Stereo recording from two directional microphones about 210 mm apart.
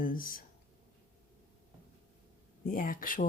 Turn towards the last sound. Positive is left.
turn(degrees=40)  # may be behind; listen again after turning